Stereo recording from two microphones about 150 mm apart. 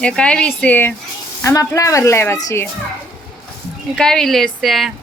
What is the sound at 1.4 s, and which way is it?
Speech, 20° left (ahead or behind).